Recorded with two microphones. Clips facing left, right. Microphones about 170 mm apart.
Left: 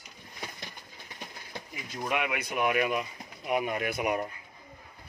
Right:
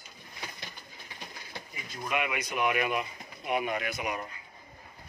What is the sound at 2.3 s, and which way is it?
Speech, 50° left (ahead or behind).